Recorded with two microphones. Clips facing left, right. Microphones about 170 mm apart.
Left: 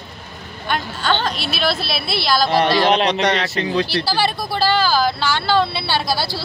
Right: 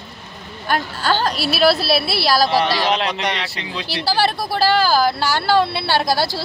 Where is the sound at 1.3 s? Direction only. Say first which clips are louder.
Right 5 dB; 5° right (ahead or behind).